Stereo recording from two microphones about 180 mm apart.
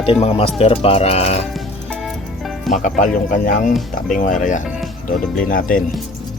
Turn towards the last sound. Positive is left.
turn(degrees=50)  # may be behind; listen again after turning